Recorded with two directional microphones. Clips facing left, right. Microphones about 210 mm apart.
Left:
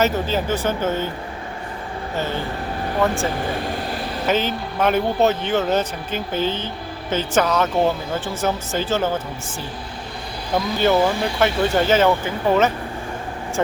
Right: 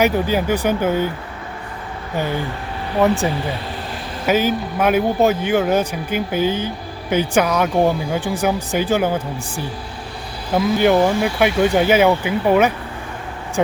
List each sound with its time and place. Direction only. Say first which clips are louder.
0.0 s speech: right 3 dB; 15° right (ahead or behind)
2.1 s speech: right 3 dB; 15° right (ahead or behind)